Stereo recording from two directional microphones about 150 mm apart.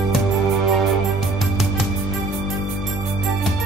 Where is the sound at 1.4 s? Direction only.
Centre (ahead or behind).